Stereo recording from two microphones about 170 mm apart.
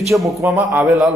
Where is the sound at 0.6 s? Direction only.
5° right (ahead or behind).